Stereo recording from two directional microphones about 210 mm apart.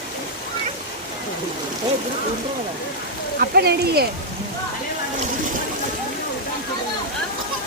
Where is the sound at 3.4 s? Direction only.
50° right (ahead or behind).